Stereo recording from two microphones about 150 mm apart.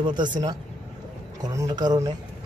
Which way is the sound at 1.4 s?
25° right (ahead or behind).